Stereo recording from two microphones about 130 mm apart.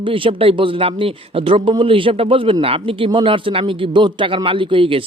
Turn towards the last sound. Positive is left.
turn(degrees=-45)  # may be behind; listen again after turning